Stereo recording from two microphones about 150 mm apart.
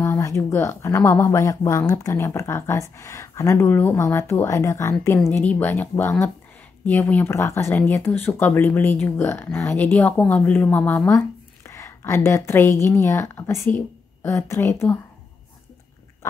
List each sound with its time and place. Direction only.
0.0 s a woman's voice: 20° left (ahead or behind)